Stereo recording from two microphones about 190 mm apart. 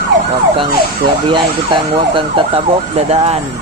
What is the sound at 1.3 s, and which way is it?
Speech, 25° right (ahead or behind).